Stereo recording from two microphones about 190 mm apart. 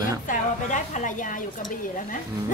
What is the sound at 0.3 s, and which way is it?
A woman's voice, 40° left (ahead or behind).